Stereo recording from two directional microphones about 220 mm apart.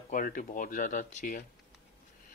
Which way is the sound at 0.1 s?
35° left (ahead or behind).